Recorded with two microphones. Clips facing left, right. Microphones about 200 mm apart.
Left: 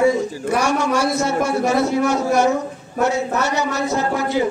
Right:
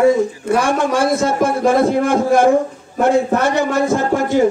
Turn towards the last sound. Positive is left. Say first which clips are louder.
# right 4 dB
turn(degrees=-50)  # may be behind; listen again after turning